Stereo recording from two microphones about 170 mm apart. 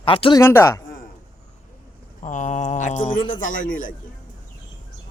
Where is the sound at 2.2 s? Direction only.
45° left (ahead or behind).